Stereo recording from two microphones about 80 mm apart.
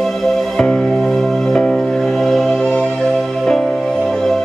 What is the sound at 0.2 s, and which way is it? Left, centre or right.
Music, centre.